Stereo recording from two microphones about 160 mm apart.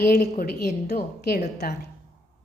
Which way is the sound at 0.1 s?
75° left (ahead or behind).